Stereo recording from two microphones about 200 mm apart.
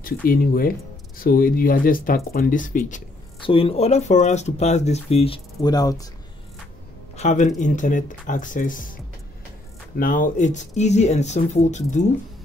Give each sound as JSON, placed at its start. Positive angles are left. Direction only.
{"t": 0.0, "sound": "speech", "side_deg": 45}
{"t": 3.4, "sound": "speech", "side_deg": 30}
{"t": 7.2, "sound": "speech", "side_deg": 35}
{"t": 9.9, "sound": "speech", "side_deg": 40}